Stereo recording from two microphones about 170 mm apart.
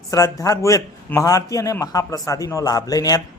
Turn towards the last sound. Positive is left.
turn(degrees=20)  # may be behind; listen again after turning